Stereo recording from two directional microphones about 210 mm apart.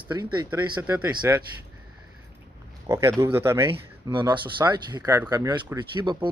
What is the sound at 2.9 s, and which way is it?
Speech, 15° right (ahead or behind).